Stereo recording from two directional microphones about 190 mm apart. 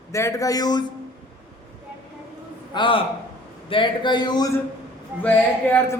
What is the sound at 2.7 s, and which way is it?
Speech, 25° left (ahead or behind).